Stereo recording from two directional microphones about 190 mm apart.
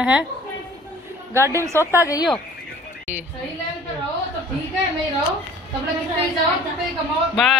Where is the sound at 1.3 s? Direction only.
15° right (ahead or behind).